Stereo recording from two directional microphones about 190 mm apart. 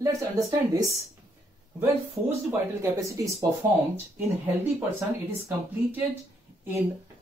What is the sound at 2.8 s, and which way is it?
Speech, 15° right (ahead or behind).